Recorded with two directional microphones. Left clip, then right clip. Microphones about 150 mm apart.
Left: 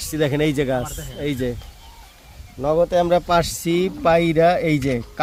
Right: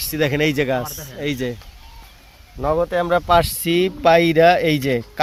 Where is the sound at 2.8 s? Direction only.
15° left (ahead or behind).